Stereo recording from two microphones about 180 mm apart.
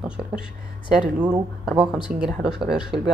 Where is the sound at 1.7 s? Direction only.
5° right (ahead or behind).